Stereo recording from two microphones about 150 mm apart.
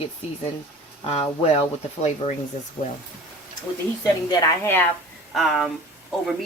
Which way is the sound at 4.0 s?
25° left (ahead or behind).